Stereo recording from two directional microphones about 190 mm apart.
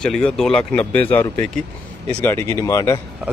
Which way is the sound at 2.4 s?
15° left (ahead or behind).